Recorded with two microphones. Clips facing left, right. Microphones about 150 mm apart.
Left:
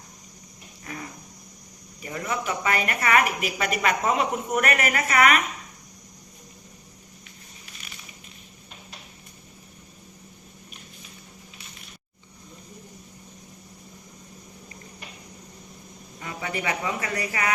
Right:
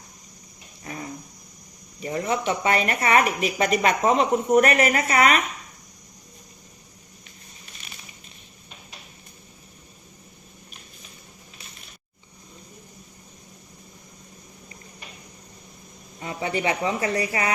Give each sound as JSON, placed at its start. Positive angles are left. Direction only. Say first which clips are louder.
{"t": 0.9, "sound": "cricket", "louder": "right 2 dB", "side_deg": -25}
{"t": 2.0, "sound": "a woman's voice", "louder": "right 5 dB", "side_deg": -30}
{"t": 16.2, "sound": "speech", "louder": "right 4 dB", "side_deg": -25}